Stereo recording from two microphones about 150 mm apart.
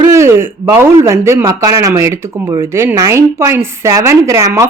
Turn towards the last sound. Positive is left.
turn(degrees=-20)  # may be behind; listen again after turning